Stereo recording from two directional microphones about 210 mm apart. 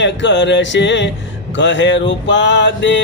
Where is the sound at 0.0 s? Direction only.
55° left (ahead or behind).